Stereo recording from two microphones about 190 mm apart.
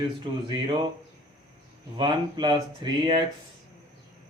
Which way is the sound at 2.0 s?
25° right (ahead or behind).